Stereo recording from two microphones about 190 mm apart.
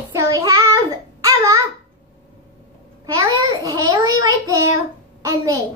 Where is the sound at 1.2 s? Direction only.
20° right (ahead or behind).